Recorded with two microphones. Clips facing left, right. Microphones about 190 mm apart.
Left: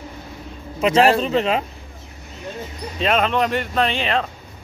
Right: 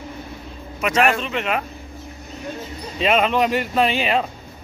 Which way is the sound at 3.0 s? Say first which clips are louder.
Right 1 dB; 5° right (ahead or behind).